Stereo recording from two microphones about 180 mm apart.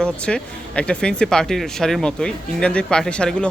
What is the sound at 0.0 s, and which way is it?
Speech, 5° left (ahead or behind).